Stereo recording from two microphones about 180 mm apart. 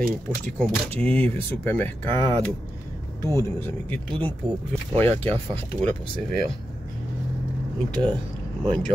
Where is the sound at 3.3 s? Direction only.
15° left (ahead or behind).